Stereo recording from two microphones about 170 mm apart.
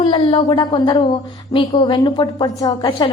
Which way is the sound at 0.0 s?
30° left (ahead or behind).